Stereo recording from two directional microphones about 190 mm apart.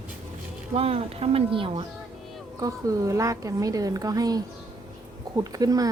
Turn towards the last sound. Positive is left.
turn(degrees=-20)  # may be behind; listen again after turning